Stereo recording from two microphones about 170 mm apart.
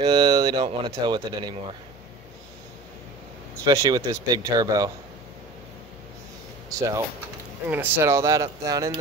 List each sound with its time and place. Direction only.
0.0 s speech: 25° right (ahead or behind)
3.6 s speech: 20° right (ahead or behind)
7.6 s speech: 10° right (ahead or behind)